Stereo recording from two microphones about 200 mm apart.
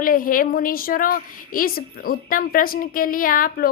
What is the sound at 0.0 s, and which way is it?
A woman's voice, 45° left (ahead or behind).